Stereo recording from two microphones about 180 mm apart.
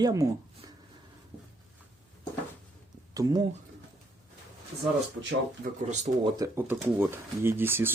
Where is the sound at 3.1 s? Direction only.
20° right (ahead or behind).